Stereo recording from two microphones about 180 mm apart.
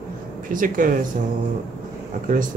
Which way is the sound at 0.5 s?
50° right (ahead or behind).